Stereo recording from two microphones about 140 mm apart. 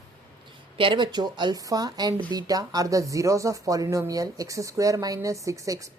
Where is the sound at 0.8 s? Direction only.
35° right (ahead or behind).